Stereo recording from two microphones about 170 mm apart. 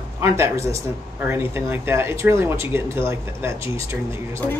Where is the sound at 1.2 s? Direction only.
15° right (ahead or behind).